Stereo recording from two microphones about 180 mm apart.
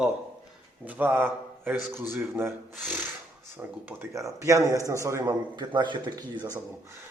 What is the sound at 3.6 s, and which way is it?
A man's voice, 10° right (ahead or behind).